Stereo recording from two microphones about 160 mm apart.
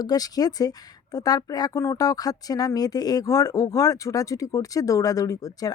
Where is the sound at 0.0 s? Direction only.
25° left (ahead or behind).